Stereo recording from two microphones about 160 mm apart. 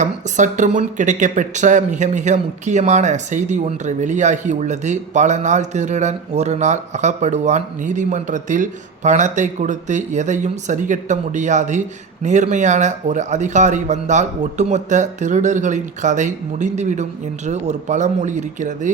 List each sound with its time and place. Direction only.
0.0 s speech: 50° right (ahead or behind)